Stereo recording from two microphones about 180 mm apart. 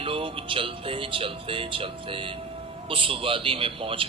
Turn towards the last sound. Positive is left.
turn(degrees=-30)  # may be behind; listen again after turning